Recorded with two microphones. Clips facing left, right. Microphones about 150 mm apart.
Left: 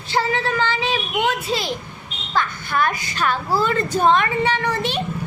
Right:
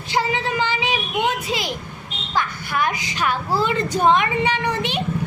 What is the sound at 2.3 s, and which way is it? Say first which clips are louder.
Child singing: left 1 dB; 15° right (ahead or behind).